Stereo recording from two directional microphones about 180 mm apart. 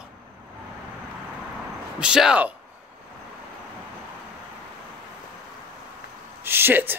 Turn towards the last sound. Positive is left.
turn(degrees=-10)  # may be behind; listen again after turning